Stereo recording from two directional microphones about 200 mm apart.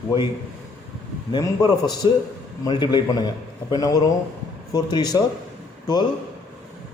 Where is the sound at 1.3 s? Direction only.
20° left (ahead or behind).